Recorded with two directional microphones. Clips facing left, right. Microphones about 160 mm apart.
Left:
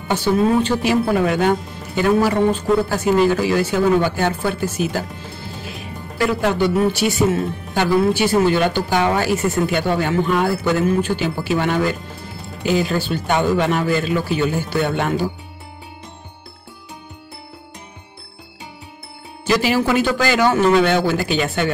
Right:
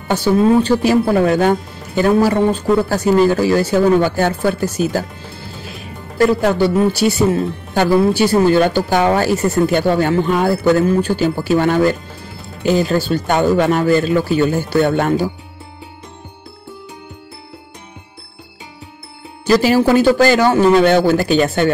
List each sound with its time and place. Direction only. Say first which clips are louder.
0.1 s speech: right 4 dB; 40° right (ahead or behind)
6.1 s speech: right 5 dB; 40° right (ahead or behind)
19.4 s speech: right 5 dB; 40° right (ahead or behind)